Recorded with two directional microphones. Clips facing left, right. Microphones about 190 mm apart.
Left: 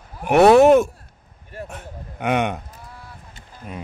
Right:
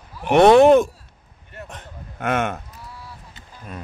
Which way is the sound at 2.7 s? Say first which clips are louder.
Right 1 dB; 50° left (ahead or behind).